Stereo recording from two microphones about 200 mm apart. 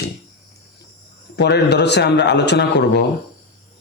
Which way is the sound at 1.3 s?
55° left (ahead or behind).